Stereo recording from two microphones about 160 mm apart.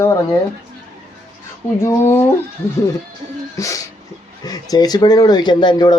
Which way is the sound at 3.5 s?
20° left (ahead or behind).